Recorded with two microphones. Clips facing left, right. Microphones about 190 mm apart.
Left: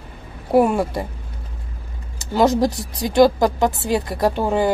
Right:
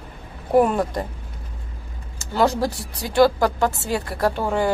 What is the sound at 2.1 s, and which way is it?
Speech, 15° left (ahead or behind).